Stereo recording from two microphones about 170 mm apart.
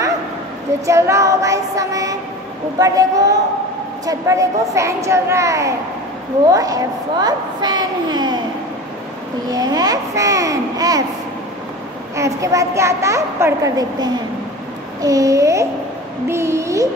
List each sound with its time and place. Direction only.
0.8 s a child's voice: 15° right (ahead or behind)
9.5 s a child's voice: 20° right (ahead or behind)
12.2 s a child's voice: 20° right (ahead or behind)